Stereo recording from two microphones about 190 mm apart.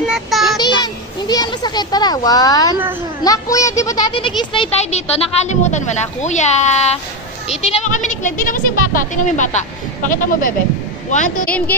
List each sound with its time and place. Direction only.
0.1 s a child's voice: centre (ahead or behind)
1.2 s a child's voice: 20° left (ahead or behind); by 11.3 s 40° left (ahead or behind)
11.4 s speech: 5° left (ahead or behind)